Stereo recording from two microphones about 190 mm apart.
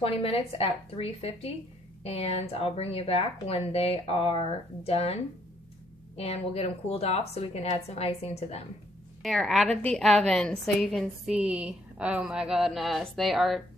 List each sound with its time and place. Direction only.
0.0 s speech: 30° left (ahead or behind)
9.2 s a woman's voice: centre (ahead or behind)